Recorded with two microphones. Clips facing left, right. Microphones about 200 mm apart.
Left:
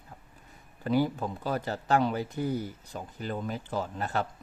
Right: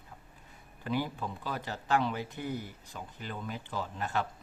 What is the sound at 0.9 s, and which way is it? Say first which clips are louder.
Speech: left 6 dB; 40° left (ahead or behind).